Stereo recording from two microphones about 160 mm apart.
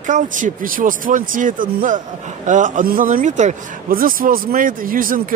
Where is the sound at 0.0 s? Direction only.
50° right (ahead or behind).